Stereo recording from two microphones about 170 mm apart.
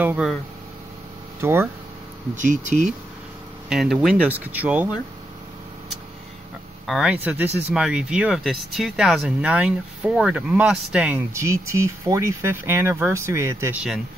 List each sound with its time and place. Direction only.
0.0 s speech: 10° right (ahead or behind)
1.4 s speech: 15° right (ahead or behind)
2.3 s speech: 45° right (ahead or behind)
3.6 s speech: centre (ahead or behind)
6.9 s speech: 5° right (ahead or behind)
11.3 s speech: 15° right (ahead or behind)